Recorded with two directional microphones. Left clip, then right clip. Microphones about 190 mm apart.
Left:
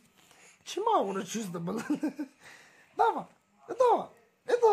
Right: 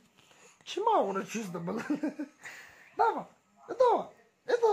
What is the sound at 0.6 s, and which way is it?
Speech, 35° left (ahead or behind).